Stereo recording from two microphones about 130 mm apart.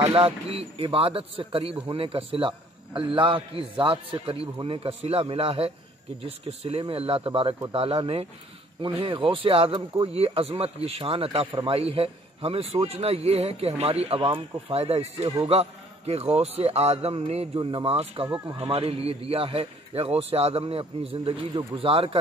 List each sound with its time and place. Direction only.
0.1 s speech: 45° right (ahead or behind)
17.6 s speech: 40° right (ahead or behind)